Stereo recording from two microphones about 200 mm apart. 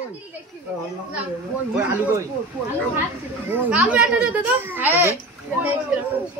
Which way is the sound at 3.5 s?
5° right (ahead or behind).